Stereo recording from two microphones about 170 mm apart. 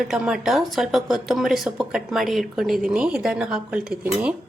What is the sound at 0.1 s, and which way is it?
A woman's voice, 5° right (ahead or behind).